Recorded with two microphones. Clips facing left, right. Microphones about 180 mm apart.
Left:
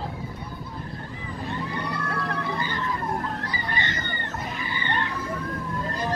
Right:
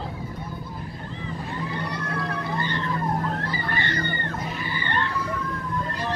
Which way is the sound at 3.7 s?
20° left (ahead or behind).